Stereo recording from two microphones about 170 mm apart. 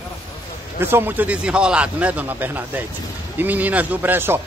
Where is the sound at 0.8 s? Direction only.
15° right (ahead or behind).